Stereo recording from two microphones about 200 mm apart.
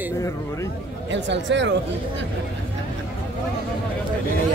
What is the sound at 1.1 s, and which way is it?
Speech, 65° right (ahead or behind).